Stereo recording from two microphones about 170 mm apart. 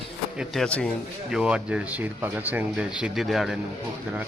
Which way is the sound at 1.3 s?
5° right (ahead or behind).